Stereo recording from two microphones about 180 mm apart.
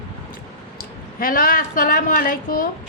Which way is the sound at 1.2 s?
50° left (ahead or behind).